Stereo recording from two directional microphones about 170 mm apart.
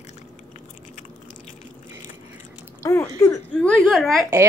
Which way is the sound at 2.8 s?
15° left (ahead or behind).